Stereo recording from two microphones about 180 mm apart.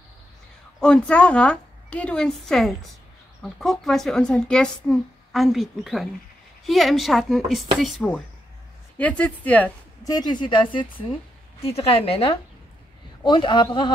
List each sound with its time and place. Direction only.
0.7 s speech: 5° left (ahead or behind)
10.0 s a woman's voice: 20° left (ahead or behind)